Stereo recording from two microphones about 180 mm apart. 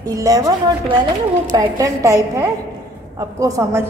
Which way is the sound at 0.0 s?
20° right (ahead or behind).